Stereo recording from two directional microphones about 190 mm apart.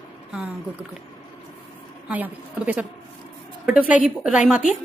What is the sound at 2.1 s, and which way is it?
A woman's voice, 10° right (ahead or behind).